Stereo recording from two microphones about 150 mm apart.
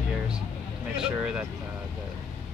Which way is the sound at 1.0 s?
5° right (ahead or behind).